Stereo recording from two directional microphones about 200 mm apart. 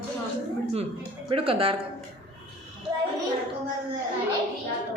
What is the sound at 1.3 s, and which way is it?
Speech, 25° right (ahead or behind).